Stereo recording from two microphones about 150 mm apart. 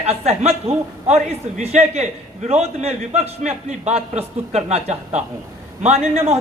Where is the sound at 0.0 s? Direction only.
45° right (ahead or behind).